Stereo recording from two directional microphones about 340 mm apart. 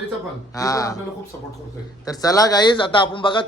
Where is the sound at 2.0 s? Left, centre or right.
Centre.